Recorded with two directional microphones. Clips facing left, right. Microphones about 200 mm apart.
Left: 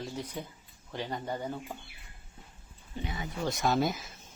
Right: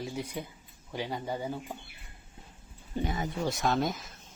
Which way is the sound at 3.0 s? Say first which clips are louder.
Right 6 dB; 45° right (ahead or behind).